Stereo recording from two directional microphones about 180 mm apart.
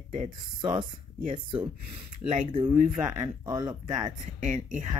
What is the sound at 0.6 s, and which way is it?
Speech, 25° right (ahead or behind).